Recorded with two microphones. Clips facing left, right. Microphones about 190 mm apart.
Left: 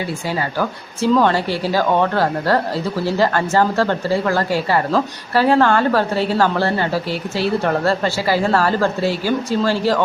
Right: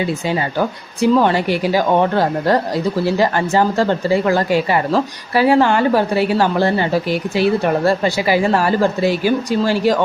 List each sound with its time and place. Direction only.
0.0 s a woman's voice: 20° right (ahead or behind)